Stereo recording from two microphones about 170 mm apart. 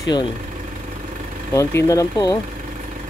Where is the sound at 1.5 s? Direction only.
20° left (ahead or behind).